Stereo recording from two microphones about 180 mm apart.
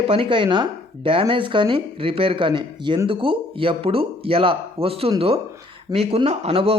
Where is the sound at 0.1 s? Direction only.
30° right (ahead or behind).